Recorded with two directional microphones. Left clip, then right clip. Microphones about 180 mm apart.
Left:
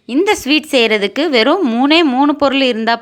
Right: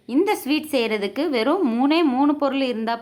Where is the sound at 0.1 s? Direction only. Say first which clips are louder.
Left 8 dB; 15° left (ahead or behind).